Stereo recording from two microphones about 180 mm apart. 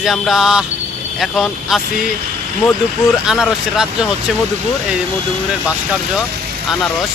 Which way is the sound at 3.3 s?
5° right (ahead or behind).